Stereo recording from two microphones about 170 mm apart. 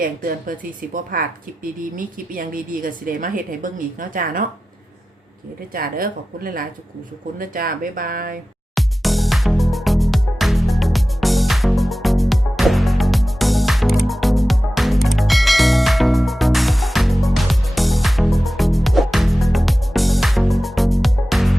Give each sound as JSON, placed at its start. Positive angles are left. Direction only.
{"t": 0.0, "sound": "a woman's voice", "side_deg": -55}
{"t": 5.7, "sound": "speech", "side_deg": -60}
{"t": 8.7, "sound": "music", "side_deg": 0}